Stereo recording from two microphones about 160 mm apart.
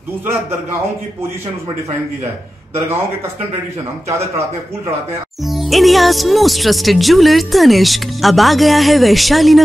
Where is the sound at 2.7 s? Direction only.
15° right (ahead or behind).